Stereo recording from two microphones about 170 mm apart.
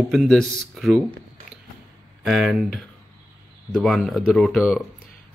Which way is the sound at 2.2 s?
Centre (ahead or behind).